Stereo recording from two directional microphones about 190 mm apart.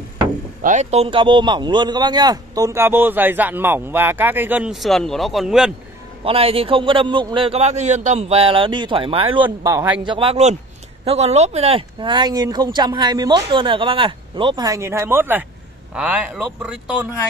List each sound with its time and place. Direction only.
0.6 s a man's voice: 40° right (ahead or behind); by 5.7 s centre (ahead or behind)
6.2 s speech: 30° right (ahead or behind)
10.0 s a man's voice: 30° right (ahead or behind); by 17.1 s 5° right (ahead or behind)